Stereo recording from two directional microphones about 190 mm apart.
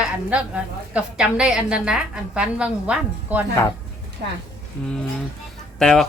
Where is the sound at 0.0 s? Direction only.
5° right (ahead or behind).